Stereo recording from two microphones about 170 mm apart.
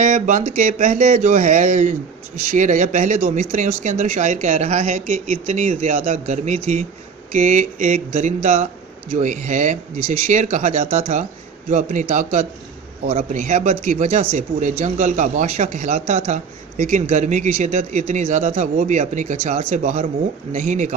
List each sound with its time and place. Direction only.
0.0 s speech: 45° right (ahead or behind)
10.8 s speech: 35° right (ahead or behind)